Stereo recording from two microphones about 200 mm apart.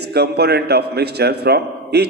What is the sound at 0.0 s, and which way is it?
A man's voice, 55° right (ahead or behind).